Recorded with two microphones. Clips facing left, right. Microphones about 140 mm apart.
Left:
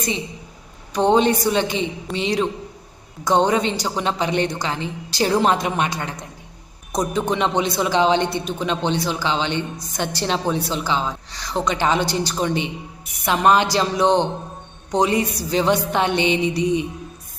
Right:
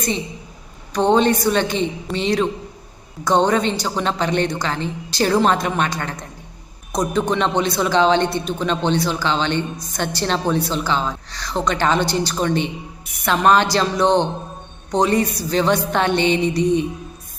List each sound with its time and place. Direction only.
0.9 s a woman's voice: 15° left (ahead or behind)